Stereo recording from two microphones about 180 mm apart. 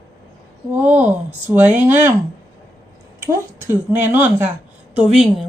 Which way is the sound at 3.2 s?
15° right (ahead or behind).